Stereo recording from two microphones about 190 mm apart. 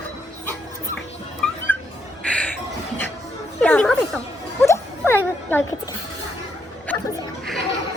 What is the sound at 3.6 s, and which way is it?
Music, 5° left (ahead or behind).